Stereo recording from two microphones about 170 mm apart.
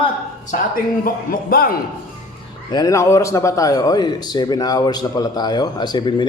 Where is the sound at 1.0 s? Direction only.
60° left (ahead or behind).